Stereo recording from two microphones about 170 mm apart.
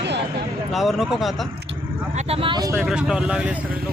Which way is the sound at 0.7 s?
Centre (ahead or behind).